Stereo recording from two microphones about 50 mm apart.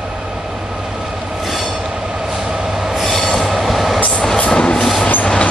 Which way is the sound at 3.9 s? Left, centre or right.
Left.